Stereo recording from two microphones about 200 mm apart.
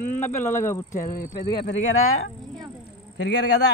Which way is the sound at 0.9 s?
40° left (ahead or behind).